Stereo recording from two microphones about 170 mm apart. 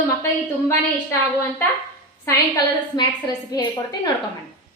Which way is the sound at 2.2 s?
25° left (ahead or behind).